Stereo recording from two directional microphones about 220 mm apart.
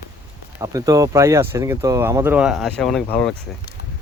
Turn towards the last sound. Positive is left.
turn(degrees=5)  # may be behind; listen again after turning